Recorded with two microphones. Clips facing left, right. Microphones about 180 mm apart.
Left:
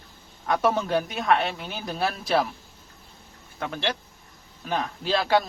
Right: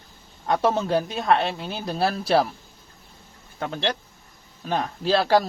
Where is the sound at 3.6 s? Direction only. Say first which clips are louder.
Right 2 dB; 30° right (ahead or behind).